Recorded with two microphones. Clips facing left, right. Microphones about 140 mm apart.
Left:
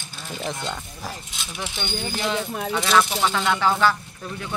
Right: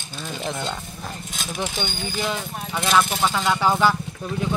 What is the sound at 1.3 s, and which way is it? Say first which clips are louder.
Speech: right 5 dB; 40° right (ahead or behind).